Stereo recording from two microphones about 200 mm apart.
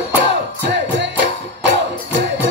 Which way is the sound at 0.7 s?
60° right (ahead or behind).